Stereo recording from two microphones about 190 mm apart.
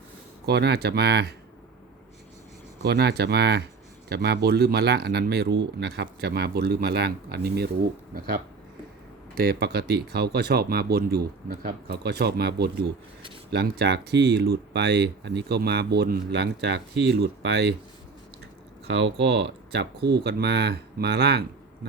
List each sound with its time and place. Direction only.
0.4 s speech: 60° right (ahead or behind)
2.8 s speech: 60° right (ahead or behind)
9.3 s speech: 55° right (ahead or behind)
18.9 s speech: 70° right (ahead or behind)